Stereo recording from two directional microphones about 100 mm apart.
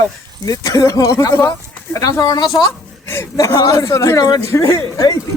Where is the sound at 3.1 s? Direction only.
25° left (ahead or behind).